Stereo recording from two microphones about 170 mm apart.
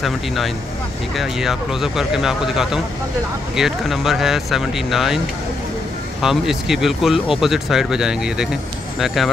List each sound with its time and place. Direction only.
1.1 s speech: centre (ahead or behind)
6.2 s speech: centre (ahead or behind)